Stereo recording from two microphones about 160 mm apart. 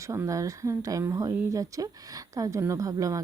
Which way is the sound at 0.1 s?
20° right (ahead or behind).